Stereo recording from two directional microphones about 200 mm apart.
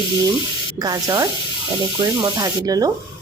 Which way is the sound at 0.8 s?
15° right (ahead or behind).